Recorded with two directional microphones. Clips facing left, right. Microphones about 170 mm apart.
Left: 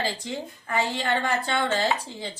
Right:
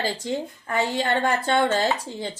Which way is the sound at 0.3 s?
45° right (ahead or behind).